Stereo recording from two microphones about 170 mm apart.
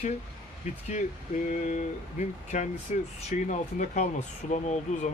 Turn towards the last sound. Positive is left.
turn(degrees=45)  # may be behind; listen again after turning